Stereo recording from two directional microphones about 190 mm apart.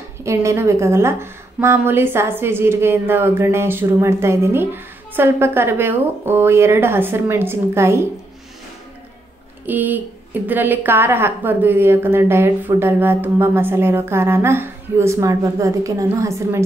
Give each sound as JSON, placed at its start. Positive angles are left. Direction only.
{"t": 0.2, "sound": "a woman's voice", "side_deg": -15}
{"t": 9.7, "sound": "a woman's voice", "side_deg": -10}